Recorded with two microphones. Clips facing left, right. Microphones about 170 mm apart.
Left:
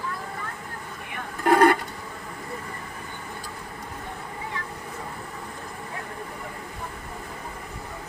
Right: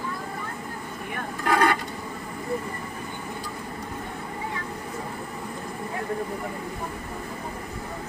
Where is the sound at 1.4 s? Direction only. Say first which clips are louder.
Left 5 dB; 45° left (ahead or behind).